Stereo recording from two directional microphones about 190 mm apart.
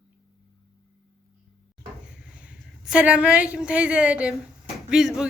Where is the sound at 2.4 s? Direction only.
5° right (ahead or behind).